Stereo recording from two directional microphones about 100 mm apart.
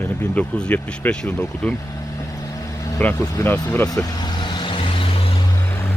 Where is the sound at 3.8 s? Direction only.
35° left (ahead or behind); by 5.4 s 65° left (ahead or behind).